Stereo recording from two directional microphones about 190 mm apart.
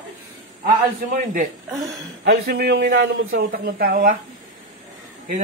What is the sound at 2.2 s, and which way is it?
Speech, 55° right (ahead or behind).